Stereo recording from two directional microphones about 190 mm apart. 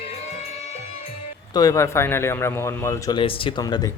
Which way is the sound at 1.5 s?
15° left (ahead or behind).